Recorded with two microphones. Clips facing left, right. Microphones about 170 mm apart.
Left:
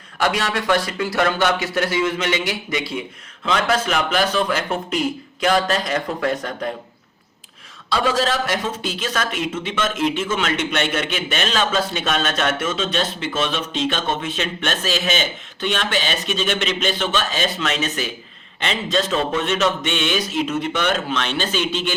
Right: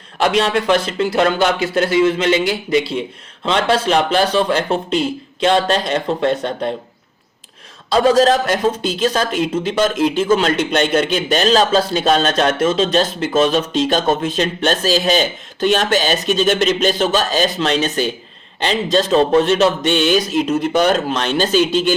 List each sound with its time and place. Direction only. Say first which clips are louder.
0.2 s speech: right 6 dB; 25° right (ahead or behind)
7.9 s a man's voice: right 8 dB; 40° right (ahead or behind)